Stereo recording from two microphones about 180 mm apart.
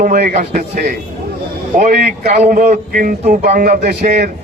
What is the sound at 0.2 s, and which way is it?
Speech, 55° right (ahead or behind).